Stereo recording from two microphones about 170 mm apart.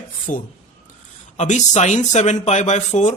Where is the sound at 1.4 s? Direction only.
45° left (ahead or behind).